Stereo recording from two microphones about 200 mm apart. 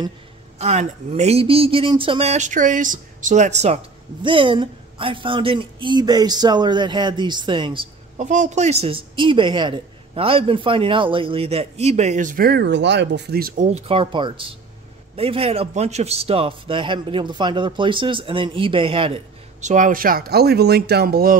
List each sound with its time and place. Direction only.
0.6 s speech: 35° right (ahead or behind); by 21.4 s 50° right (ahead or behind)